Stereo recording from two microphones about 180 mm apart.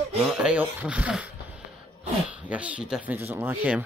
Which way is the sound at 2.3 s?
5° right (ahead or behind).